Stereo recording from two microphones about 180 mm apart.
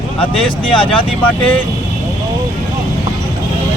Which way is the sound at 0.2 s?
30° left (ahead or behind).